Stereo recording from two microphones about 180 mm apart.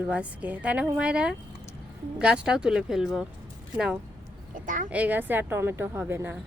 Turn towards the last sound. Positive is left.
turn(degrees=-10)  # may be behind; listen again after turning